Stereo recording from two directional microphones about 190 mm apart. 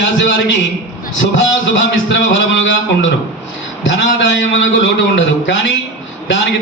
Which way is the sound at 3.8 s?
70° left (ahead or behind).